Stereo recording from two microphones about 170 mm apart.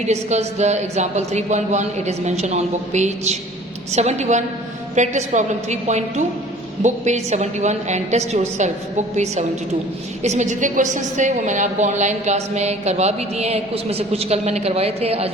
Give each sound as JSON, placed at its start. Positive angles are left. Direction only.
{"t": 0.0, "sound": "a woman's voice", "side_deg": -40}